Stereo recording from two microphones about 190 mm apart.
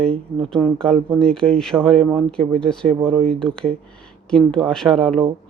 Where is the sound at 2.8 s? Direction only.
30° right (ahead or behind).